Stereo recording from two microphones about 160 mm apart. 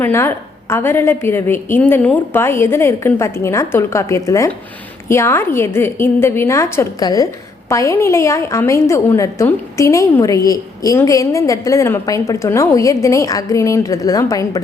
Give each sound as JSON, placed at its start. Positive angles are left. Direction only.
{"t": 0.0, "sound": "a woman's voice", "side_deg": 15}